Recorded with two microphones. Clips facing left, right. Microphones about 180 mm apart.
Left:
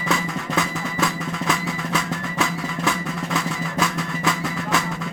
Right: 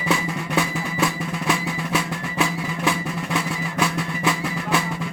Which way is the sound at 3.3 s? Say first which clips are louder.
Even; 5° right (ahead or behind).